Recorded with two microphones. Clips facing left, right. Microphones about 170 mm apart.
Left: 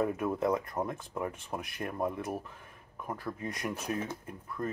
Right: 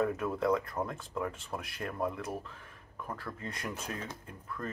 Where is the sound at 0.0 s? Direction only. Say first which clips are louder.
Left 1 dB; 15° left (ahead or behind).